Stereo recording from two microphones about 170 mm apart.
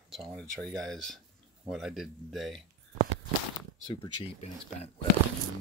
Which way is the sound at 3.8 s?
35° left (ahead or behind).